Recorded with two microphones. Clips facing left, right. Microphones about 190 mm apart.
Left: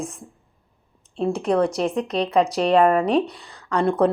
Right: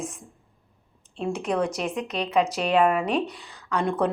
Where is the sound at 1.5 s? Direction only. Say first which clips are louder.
Left 6 dB; 35° left (ahead or behind).